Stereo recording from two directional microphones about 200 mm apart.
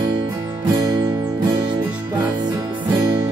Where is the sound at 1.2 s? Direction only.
20° right (ahead or behind).